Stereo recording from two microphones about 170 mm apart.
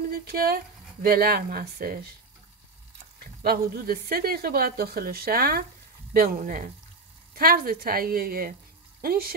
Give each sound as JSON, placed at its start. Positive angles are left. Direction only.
{"t": 0.1, "sound": "speech", "side_deg": -65}
{"t": 3.4, "sound": "speech", "side_deg": -65}